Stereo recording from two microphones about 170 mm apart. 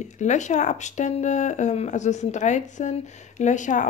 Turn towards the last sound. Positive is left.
turn(degrees=45)  # may be behind; listen again after turning